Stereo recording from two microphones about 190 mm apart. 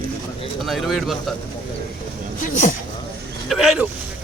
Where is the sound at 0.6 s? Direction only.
Centre (ahead or behind).